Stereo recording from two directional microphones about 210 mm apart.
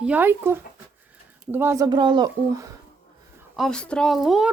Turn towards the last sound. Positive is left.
turn(degrees=0)  # may be behind; listen again after turning